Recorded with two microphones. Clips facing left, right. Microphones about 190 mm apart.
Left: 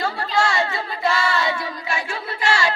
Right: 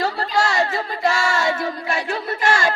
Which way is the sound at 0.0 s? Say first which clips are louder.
Right 1 dB; 40° right (ahead or behind).